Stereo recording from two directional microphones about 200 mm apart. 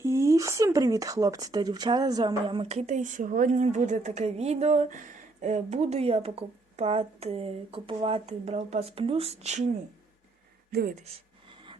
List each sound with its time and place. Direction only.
0.0 s speech: 15° right (ahead or behind); by 9.6 s 35° right (ahead or behind)
10.7 s speech: 50° right (ahead or behind)
11.4 s a sound: 25° right (ahead or behind)